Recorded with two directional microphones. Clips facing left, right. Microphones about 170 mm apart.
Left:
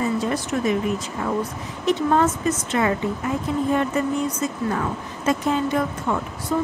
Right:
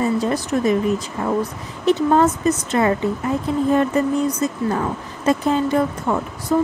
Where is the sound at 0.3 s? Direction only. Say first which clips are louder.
Right 4 dB; 35° right (ahead or behind).